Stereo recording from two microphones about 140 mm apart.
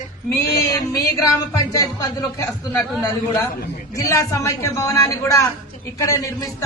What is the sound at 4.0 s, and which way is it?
Music, 25° left (ahead or behind).